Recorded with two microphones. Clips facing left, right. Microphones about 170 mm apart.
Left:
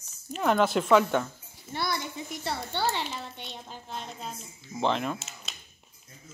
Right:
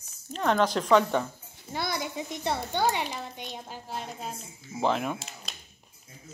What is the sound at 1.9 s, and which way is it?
A woman's voice, 15° right (ahead or behind).